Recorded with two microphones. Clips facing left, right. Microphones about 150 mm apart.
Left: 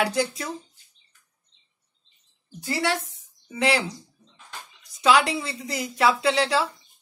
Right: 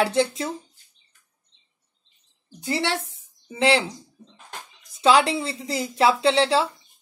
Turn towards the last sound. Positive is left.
turn(degrees=-30)  # may be behind; listen again after turning